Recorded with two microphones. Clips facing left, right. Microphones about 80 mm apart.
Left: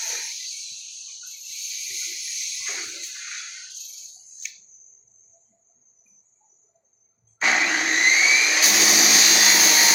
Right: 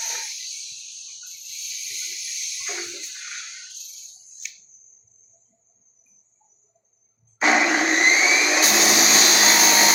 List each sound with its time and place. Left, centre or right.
2.6 s toilet flush: centre
4.4 s a sound: centre
7.4 s vacuum cleaner: centre